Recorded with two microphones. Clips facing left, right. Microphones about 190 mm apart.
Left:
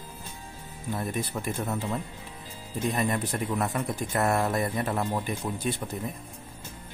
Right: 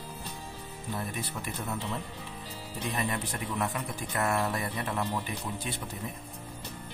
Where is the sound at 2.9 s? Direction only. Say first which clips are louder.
Left 4 dB; 45° left (ahead or behind).